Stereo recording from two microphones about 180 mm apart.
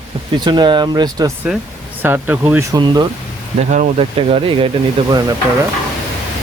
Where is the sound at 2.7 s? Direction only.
25° right (ahead or behind).